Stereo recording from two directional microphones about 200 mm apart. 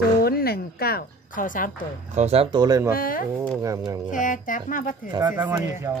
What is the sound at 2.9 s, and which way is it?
A woman's voice, 45° left (ahead or behind).